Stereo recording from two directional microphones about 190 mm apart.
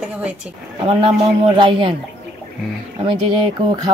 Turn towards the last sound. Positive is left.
turn(degrees=-25)  # may be behind; listen again after turning